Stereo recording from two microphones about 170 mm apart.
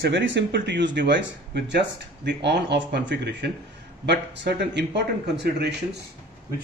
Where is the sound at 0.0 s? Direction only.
90° right.